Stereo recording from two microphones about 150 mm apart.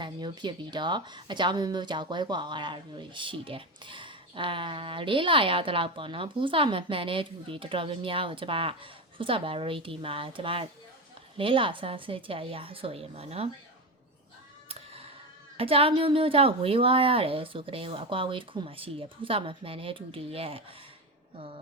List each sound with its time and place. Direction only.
0.0 s speech: 30° right (ahead or behind)
14.7 s music: 40° right (ahead or behind)
15.5 s speech: 40° right (ahead or behind)